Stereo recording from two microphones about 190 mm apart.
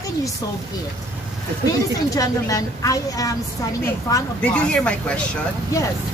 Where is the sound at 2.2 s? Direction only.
20° left (ahead or behind).